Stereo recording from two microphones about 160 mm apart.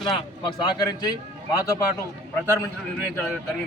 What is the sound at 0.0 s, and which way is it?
A man's voice, 30° left (ahead or behind).